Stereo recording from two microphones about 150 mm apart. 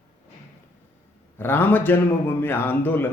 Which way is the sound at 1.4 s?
15° left (ahead or behind).